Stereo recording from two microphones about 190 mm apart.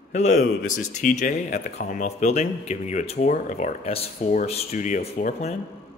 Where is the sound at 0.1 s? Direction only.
40° left (ahead or behind).